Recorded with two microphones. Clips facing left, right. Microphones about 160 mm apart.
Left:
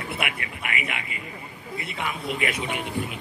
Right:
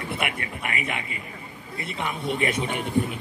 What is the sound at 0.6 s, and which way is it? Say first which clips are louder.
A man's voice: right 1 dB; 40° right (ahead or behind).